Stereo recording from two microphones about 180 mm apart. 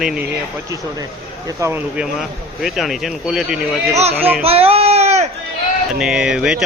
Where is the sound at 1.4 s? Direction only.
15° right (ahead or behind).